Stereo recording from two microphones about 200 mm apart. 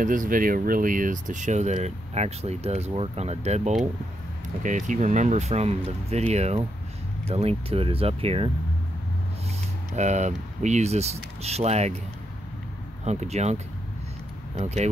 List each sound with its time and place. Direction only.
0.0 s speech: 40° right (ahead or behind)
9.9 s speech: 35° right (ahead or behind)
13.0 s speech: 35° right (ahead or behind)
14.6 s speech: 35° right (ahead or behind)